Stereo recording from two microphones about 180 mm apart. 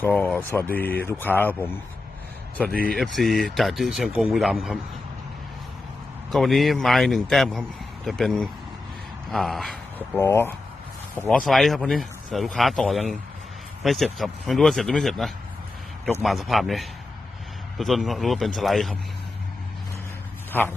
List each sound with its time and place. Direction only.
0.0 s a man's voice: 10° left (ahead or behind)
2.7 s speech: 5° left (ahead or behind)
6.3 s speech: centre (ahead or behind)
10.2 s a man's voice: 15° left (ahead or behind)
11.3 s speech: centre (ahead or behind)
20.5 s dog: 10° left (ahead or behind)